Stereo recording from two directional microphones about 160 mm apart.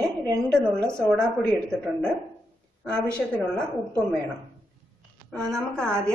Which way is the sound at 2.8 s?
5° left (ahead or behind).